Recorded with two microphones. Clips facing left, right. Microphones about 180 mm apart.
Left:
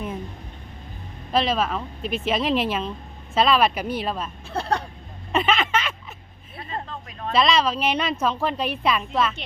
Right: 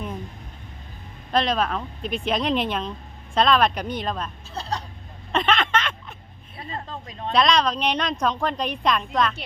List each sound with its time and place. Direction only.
1.3 s a woman's voice: 5° left (ahead or behind)
4.4 s speech: 55° left (ahead or behind)
5.3 s a sound: 5° left (ahead or behind)
7.3 s a woman's voice: 5° left (ahead or behind)